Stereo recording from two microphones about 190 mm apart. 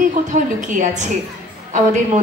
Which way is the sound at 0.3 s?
40° right (ahead or behind).